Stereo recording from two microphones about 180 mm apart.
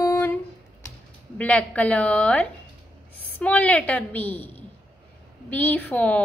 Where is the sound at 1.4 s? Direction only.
5° left (ahead or behind).